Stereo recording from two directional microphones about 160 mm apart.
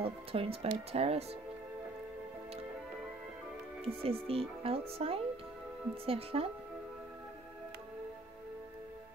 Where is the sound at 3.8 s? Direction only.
35° right (ahead or behind).